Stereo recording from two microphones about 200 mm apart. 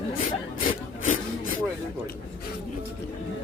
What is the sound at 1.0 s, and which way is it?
Rub, 40° left (ahead or behind).